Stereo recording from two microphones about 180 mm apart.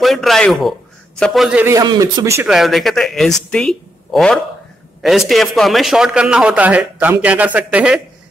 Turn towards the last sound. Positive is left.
turn(degrees=-5)  # may be behind; listen again after turning